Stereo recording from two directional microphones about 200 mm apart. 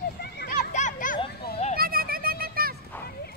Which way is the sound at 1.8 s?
45° right (ahead or behind).